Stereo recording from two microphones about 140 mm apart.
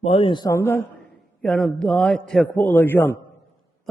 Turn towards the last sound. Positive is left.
turn(degrees=15)  # may be behind; listen again after turning